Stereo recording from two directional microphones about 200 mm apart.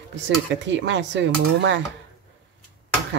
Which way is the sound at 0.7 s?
65° right (ahead or behind).